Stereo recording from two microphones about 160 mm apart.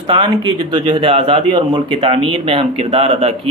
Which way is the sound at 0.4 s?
25° right (ahead or behind).